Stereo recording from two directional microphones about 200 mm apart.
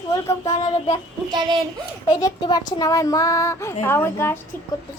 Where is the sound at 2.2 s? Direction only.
20° left (ahead or behind).